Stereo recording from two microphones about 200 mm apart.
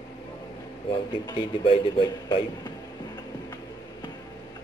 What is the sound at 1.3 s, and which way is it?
A man's voice, 25° left (ahead or behind).